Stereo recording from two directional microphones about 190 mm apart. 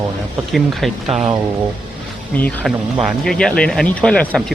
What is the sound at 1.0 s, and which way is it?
Speech, 30° right (ahead or behind).